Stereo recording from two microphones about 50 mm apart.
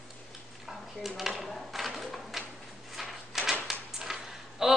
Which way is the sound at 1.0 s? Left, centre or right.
Centre.